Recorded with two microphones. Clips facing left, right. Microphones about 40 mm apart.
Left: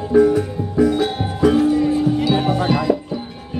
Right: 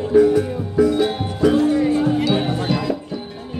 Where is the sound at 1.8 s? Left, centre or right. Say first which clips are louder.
Even; centre.